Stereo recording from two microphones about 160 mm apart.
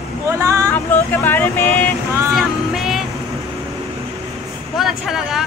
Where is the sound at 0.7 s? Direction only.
10° left (ahead or behind).